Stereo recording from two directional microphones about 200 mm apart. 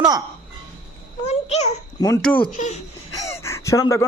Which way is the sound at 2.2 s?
5° left (ahead or behind).